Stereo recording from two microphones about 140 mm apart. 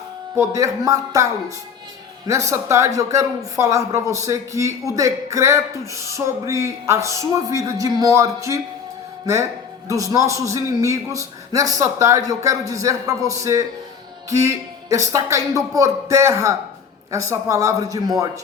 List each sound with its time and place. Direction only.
0.3 s a man's voice: 25° right (ahead or behind)